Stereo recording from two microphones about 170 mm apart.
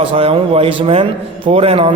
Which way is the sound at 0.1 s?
35° right (ahead or behind).